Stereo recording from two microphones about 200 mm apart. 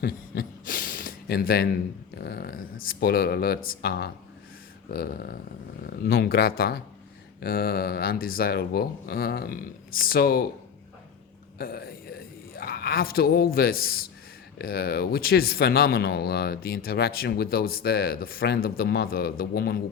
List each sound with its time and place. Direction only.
0.0 s speech: 45° left (ahead or behind)
11.5 s speech: 50° left (ahead or behind)